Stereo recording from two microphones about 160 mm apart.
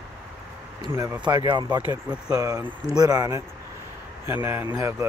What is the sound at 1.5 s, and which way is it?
Speech, 25° right (ahead or behind).